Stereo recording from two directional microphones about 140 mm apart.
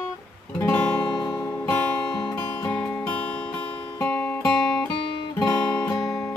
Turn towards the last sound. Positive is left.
turn(degrees=30)  # may be behind; listen again after turning